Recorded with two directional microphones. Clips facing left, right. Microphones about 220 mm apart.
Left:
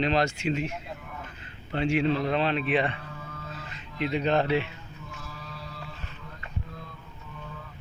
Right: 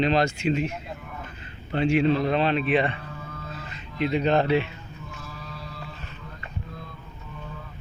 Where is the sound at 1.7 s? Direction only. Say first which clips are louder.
Right 4 dB; 40° right (ahead or behind).